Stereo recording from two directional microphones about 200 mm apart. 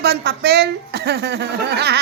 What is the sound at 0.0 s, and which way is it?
A woman's voice, 55° right (ahead or behind).